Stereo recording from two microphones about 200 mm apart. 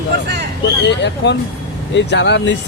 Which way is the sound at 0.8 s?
60° left (ahead or behind).